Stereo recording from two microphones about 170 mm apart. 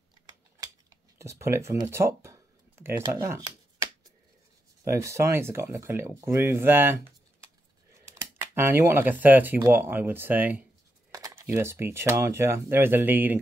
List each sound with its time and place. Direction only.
1.1 s speech: 15° right (ahead or behind)
8.1 s a sound: 15° right (ahead or behind)
9.2 s speech: 10° right (ahead or behind)